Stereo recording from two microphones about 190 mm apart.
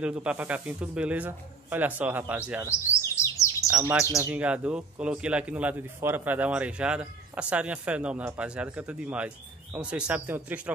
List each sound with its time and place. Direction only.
0.0 s a man's voice: 5° right (ahead or behind)
2.7 s chirp: 15° left (ahead or behind)
4.2 s a man's voice: 5° right (ahead or behind)